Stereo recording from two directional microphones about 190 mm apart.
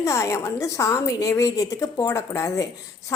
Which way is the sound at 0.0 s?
15° left (ahead or behind).